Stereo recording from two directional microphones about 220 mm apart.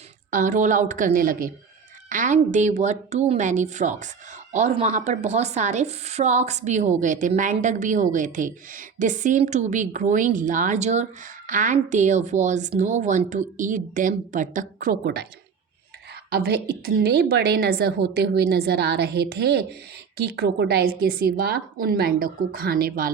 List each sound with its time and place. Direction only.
0.3 s a woman's voice: 35° right (ahead or behind)
15.0 s a woman's voice: 50° right (ahead or behind)
16.3 s a woman's voice: 45° right (ahead or behind)